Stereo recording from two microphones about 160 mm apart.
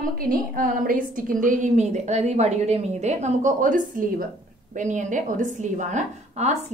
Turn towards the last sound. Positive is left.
turn(degrees=-45)  # may be behind; listen again after turning